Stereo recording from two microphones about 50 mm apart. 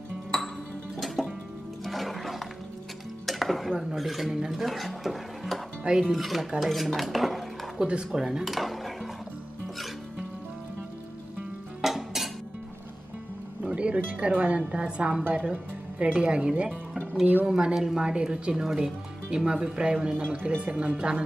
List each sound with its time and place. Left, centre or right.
0.9 s music: centre
3.3 s speech: centre
6.6 s dishes: centre
7.8 s speech: centre
8.5 s dishes: centre
11.8 s music: centre
13.7 s speech: right